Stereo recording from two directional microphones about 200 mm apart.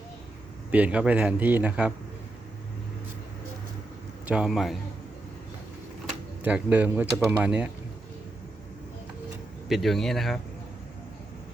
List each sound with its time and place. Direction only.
0.7 s speech: 5° right (ahead or behind)
4.3 s speech: 5° right (ahead or behind)
6.4 s speech: 10° right (ahead or behind)
9.6 s speech: centre (ahead or behind)